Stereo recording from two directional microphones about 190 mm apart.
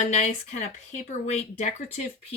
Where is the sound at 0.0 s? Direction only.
35° left (ahead or behind).